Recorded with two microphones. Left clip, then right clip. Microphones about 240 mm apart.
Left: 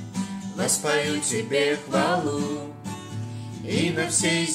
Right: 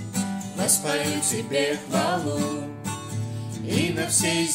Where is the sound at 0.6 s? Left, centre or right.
Right.